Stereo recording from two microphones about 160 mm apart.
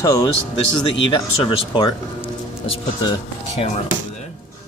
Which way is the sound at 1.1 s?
30° left (ahead or behind).